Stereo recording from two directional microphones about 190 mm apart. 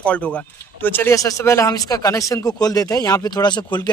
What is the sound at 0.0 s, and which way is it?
Speech, 5° left (ahead or behind).